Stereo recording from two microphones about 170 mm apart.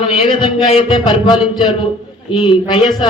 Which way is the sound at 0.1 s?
30° left (ahead or behind).